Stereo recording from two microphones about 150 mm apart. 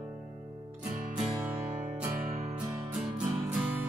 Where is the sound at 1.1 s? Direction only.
10° right (ahead or behind).